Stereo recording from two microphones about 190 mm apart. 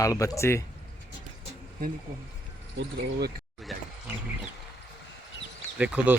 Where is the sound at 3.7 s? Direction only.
Centre (ahead or behind).